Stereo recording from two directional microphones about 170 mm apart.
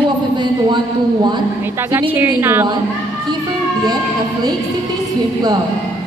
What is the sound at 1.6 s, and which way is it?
A woman's voice, 15° right (ahead or behind).